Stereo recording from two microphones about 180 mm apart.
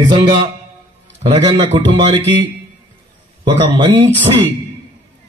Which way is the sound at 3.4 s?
25° right (ahead or behind).